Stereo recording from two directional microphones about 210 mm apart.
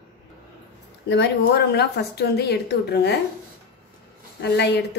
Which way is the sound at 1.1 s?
55° left (ahead or behind).